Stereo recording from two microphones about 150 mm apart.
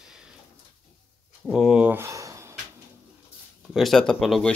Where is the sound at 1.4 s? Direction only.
5° right (ahead or behind); by 2.5 s 20° right (ahead or behind).